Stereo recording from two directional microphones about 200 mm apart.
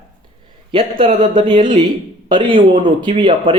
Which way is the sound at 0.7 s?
25° right (ahead or behind).